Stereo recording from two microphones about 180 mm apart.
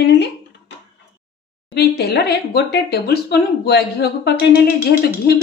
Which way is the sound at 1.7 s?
65° left (ahead or behind).